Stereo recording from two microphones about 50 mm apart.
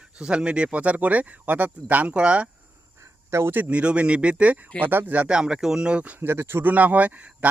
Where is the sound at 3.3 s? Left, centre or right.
Right.